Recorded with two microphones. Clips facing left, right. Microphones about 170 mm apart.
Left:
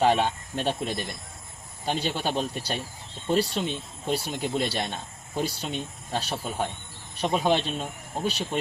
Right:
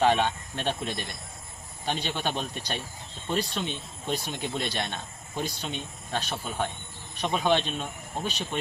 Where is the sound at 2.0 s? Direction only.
10° left (ahead or behind).